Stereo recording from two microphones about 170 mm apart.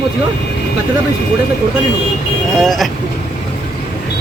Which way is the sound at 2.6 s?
Centre (ahead or behind).